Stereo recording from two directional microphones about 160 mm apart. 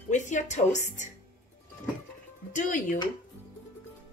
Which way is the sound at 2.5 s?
50° left (ahead or behind).